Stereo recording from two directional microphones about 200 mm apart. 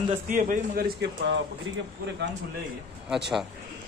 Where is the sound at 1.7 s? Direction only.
70° right (ahead or behind).